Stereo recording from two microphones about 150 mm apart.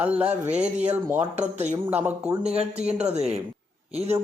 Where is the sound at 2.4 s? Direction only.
45° right (ahead or behind).